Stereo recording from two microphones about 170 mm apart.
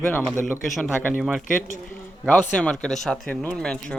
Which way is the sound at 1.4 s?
50° left (ahead or behind).